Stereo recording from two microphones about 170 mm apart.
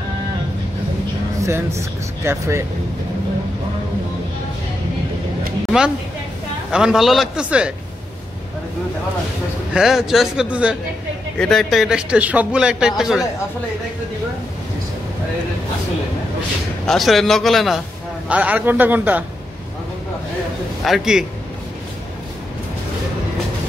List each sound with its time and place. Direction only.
1.4 s speech: 15° right (ahead or behind)
6.7 s speech: 5° right (ahead or behind)
9.8 s speech: 5° right (ahead or behind)
16.8 s a man's voice: centre (ahead or behind)
20.8 s speech: centre (ahead or behind)